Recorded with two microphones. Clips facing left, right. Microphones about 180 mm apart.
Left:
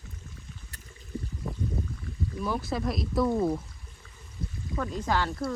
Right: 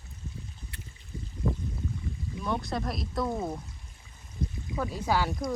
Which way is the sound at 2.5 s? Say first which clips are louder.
Even; 5° left (ahead or behind).